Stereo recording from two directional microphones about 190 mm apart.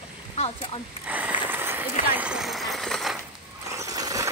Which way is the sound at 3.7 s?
15° right (ahead or behind).